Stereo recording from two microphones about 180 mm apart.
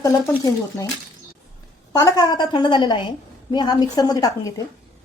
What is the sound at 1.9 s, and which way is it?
A woman's voice, 20° left (ahead or behind).